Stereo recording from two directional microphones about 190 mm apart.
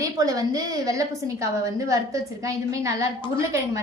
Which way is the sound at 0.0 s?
20° right (ahead or behind).